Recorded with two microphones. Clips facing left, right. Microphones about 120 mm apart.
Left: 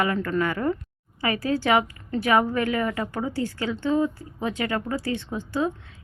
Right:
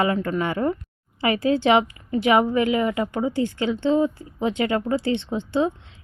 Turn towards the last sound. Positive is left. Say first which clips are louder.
# right 4 dB
turn(degrees=-25)  # may be behind; listen again after turning